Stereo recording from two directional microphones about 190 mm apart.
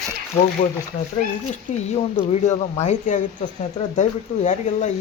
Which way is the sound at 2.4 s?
40° left (ahead or behind).